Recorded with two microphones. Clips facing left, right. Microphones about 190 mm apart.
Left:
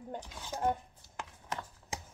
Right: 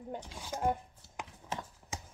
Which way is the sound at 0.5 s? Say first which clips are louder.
Even; 10° right (ahead or behind).